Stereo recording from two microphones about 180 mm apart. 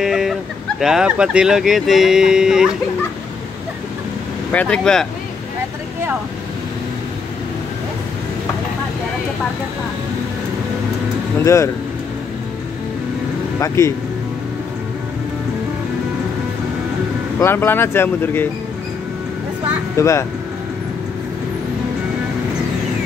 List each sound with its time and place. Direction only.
0.0 s speech: 5° right (ahead or behind)
4.5 s speech: 5° left (ahead or behind)
11.3 s speech: 15° left (ahead or behind)
13.6 s speech: 15° left (ahead or behind)
17.4 s speech: 15° left (ahead or behind)
20.0 s speech: 15° left (ahead or behind)